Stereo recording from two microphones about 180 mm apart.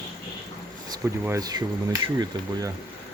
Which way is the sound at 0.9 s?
20° right (ahead or behind).